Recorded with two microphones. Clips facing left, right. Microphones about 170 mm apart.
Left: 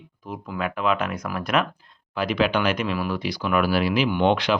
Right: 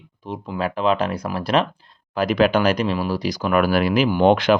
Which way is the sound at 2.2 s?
45° right (ahead or behind).